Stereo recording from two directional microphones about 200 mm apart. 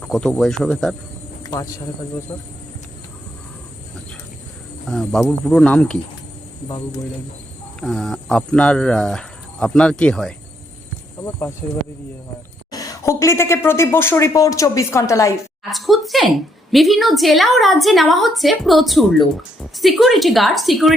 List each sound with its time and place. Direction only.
0.0 s a woman's voice: 5° left (ahead or behind)
1.5 s speech: 15° left (ahead or behind)
4.9 s a woman's voice: 5° left (ahead or behind)
7.8 s a woman's voice: centre (ahead or behind)
12.7 s speech: 15° left (ahead or behind)
15.7 s a woman's voice: centre (ahead or behind)